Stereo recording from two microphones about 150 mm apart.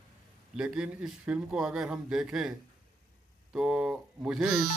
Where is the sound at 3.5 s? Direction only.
5° right (ahead or behind).